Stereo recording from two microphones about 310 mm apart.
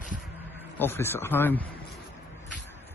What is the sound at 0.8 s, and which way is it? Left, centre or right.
Speech, centre.